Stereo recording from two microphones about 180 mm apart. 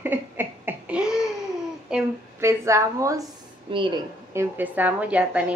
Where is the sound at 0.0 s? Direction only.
10° right (ahead or behind).